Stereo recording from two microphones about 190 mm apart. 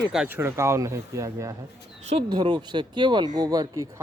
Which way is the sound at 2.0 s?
35° right (ahead or behind).